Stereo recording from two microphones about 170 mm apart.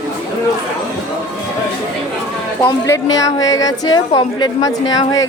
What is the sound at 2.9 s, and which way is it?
A woman's voice, 20° left (ahead or behind).